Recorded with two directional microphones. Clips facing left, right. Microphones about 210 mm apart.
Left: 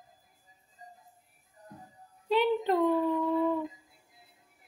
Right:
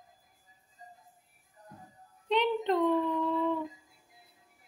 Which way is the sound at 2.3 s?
5° left (ahead or behind).